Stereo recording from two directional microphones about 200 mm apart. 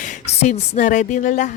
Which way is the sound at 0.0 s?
35° left (ahead or behind).